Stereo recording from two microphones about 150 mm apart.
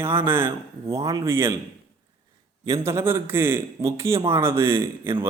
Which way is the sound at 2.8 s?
15° right (ahead or behind).